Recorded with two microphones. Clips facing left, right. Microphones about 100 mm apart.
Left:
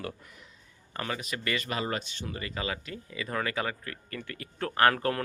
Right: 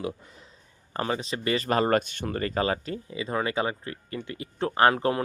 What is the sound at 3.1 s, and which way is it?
Speech, 20° right (ahead or behind).